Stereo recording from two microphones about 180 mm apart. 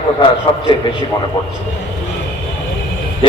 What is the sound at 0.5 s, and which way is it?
Speech, 25° left (ahead or behind).